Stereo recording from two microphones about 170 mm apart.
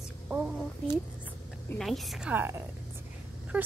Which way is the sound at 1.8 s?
Centre (ahead or behind).